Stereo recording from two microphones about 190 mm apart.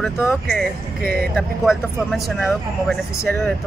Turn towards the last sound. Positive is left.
turn(degrees=0)  # may be behind; listen again after turning